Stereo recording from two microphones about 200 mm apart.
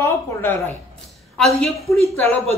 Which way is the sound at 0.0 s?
10° left (ahead or behind).